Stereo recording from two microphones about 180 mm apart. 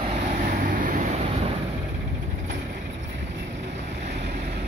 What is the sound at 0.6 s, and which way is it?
Vehicle, 45° right (ahead or behind).